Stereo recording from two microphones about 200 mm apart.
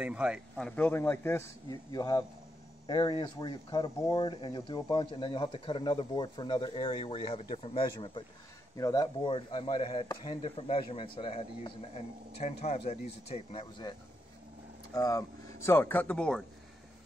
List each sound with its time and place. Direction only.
0.0 s speech: 5° right (ahead or behind); by 13.9 s 25° left (ahead or behind)
15.0 s speech: 15° left (ahead or behind)